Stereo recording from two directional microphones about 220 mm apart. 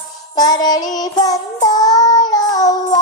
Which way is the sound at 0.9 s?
15° left (ahead or behind).